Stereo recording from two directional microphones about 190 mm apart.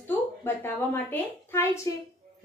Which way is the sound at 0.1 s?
10° left (ahead or behind).